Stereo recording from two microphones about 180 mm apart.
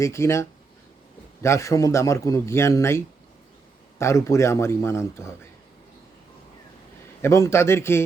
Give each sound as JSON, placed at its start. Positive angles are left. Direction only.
{"t": 0.0, "sound": "a man's voice", "side_deg": 15}
{"t": 7.2, "sound": "a man's voice", "side_deg": 15}